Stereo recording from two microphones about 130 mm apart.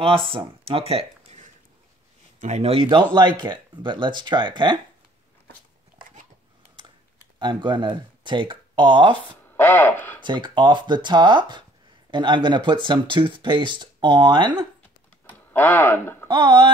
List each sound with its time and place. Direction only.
0.0 s speech: 40° right (ahead or behind)
0.7 s a sound: 50° right (ahead or behind)
2.4 s speech: 55° right (ahead or behind); by 4.7 s 40° right (ahead or behind)
7.3 s speech: 35° right (ahead or behind)
9.6 s speech: 15° left (ahead or behind)
10.2 s speech: 35° right (ahead or behind)
15.2 s a sound: 15° left (ahead or behind)
16.3 s speech: 35° right (ahead or behind)